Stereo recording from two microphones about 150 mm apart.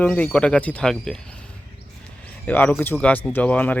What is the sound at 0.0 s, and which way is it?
Speech, 10° left (ahead or behind).